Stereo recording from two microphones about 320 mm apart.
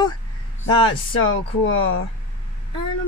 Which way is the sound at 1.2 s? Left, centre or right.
Left.